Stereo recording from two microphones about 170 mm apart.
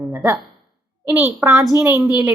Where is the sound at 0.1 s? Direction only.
15° right (ahead or behind).